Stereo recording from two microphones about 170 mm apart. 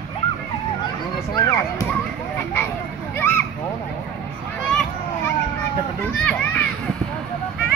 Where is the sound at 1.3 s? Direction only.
15° left (ahead or behind).